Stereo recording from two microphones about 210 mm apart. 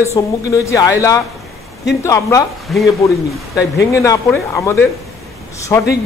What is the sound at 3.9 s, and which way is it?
A man's voice, 15° left (ahead or behind).